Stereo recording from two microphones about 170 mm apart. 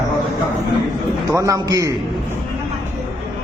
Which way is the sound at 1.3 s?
20° right (ahead or behind).